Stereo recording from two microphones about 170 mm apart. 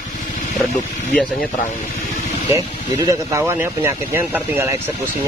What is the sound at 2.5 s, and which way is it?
Speech, 20° right (ahead or behind).